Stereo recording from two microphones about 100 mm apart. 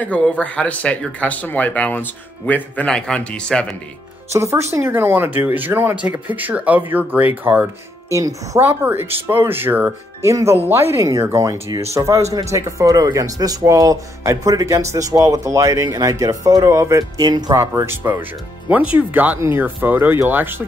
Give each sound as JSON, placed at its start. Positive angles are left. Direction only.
{"t": 0.0, "sound": "speech", "side_deg": 15}
{"t": 4.3, "sound": "speech", "side_deg": -30}
{"t": 8.1, "sound": "speech", "side_deg": -35}
{"t": 8.5, "sound": "speech", "side_deg": -20}
{"t": 17.2, "sound": "speech", "side_deg": -45}
{"t": 17.6, "sound": "speech", "side_deg": -25}